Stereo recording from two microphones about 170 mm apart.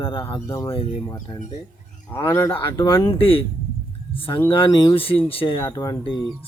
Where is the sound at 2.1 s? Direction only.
15° left (ahead or behind).